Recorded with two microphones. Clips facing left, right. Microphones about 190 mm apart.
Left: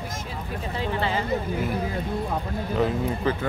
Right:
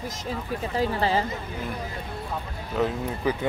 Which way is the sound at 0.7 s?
35° right (ahead or behind).